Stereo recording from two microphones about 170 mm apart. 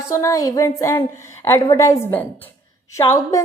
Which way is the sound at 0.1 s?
20° left (ahead or behind).